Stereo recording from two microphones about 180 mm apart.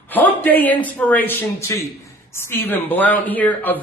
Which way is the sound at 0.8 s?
10° left (ahead or behind).